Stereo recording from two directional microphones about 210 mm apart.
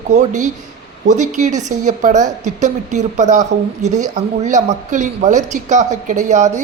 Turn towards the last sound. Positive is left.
turn(degrees=-35)  # may be behind; listen again after turning